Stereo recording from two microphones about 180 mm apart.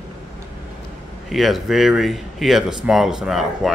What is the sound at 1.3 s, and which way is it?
Speech, centre (ahead or behind).